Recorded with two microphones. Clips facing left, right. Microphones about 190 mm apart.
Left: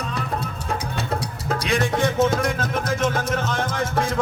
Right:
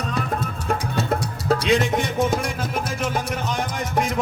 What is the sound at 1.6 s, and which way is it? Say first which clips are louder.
Music: left 2 dB; 20° right (ahead or behind).